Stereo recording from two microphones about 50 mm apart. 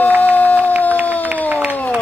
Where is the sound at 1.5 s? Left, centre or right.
Right.